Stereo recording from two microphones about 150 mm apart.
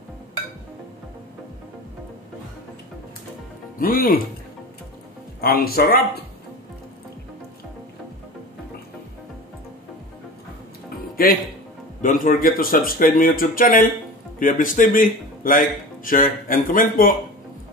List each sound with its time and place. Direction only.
3.8 s speech: 70° left (ahead or behind)
5.4 s speech: 80° left
11.2 s speech: 80° left
12.0 s speech: 60° left (ahead or behind)